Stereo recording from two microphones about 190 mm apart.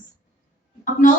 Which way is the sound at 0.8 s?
45° left (ahead or behind).